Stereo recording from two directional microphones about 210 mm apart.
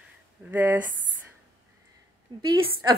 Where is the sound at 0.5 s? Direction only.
10° right (ahead or behind).